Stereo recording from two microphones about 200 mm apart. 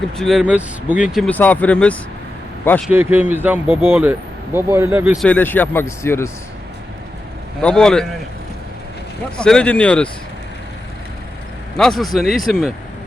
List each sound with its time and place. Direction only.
0.2 s speech: centre (ahead or behind)
2.9 s speech: 10° right (ahead or behind)
5.2 s speech: 10° left (ahead or behind)
7.6 s speech: 5° left (ahead or behind)
9.4 s speech: 5° left (ahead or behind)
11.8 s speech: centre (ahead or behind)